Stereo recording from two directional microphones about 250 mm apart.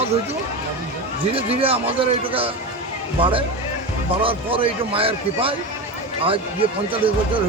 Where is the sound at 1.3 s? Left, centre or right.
Right.